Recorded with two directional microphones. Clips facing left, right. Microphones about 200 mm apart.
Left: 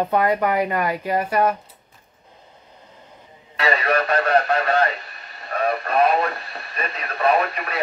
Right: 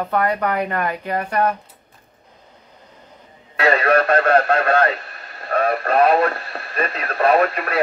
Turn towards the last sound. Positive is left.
turn(degrees=-55)  # may be behind; listen again after turning